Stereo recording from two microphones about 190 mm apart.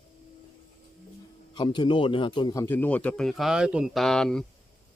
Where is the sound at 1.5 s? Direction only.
25° left (ahead or behind); by 4.4 s 5° left (ahead or behind).